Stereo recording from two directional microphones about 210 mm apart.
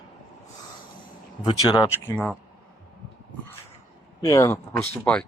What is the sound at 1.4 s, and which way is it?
Speech, 20° left (ahead or behind).